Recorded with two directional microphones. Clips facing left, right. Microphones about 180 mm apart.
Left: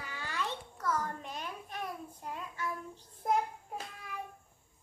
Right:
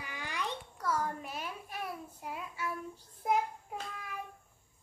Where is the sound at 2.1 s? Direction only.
10° right (ahead or behind).